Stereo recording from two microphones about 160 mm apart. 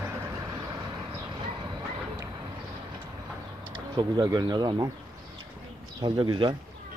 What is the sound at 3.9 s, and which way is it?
Speech, 25° right (ahead or behind).